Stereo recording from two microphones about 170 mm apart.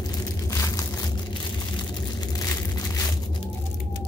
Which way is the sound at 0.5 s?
20° left (ahead or behind).